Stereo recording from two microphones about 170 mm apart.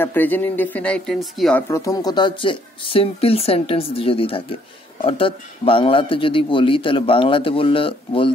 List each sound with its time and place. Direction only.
0.0 s speech: 10° left (ahead or behind)
1.7 s a man's voice: 20° left (ahead or behind)